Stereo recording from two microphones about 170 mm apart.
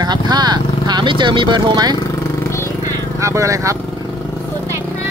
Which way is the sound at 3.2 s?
20° right (ahead or behind).